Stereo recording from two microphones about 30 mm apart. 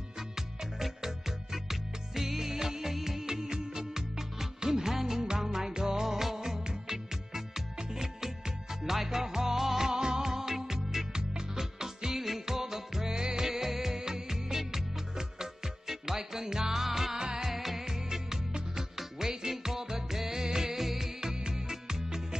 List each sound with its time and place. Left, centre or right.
0.4 s music: centre
9.9 s music: right
17.2 s music: right
17.5 s music: centre
21.2 s music: right